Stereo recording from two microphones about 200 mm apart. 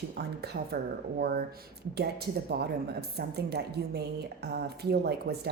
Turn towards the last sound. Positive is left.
turn(degrees=-55)  # may be behind; listen again after turning